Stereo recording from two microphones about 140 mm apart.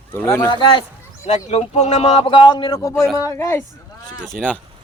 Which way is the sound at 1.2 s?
50° left (ahead or behind).